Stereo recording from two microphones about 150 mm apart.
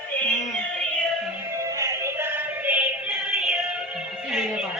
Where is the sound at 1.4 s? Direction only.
20° right (ahead or behind).